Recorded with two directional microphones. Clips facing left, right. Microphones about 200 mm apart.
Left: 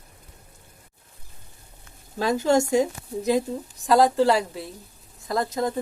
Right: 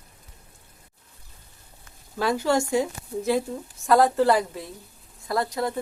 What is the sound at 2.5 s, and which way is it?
Speech, 45° left (ahead or behind).